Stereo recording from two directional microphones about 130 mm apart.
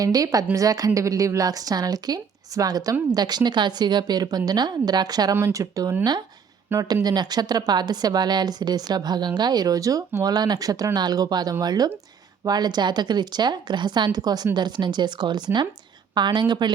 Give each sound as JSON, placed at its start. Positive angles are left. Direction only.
{"t": 0.0, "sound": "a woman's voice", "side_deg": -25}